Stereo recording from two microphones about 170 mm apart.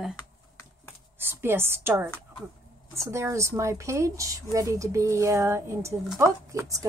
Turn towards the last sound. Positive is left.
turn(degrees=-20)  # may be behind; listen again after turning